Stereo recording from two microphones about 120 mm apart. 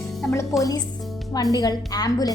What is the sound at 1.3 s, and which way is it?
Speech, 30° left (ahead or behind).